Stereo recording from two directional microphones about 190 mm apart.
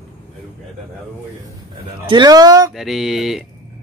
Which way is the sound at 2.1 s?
20° right (ahead or behind).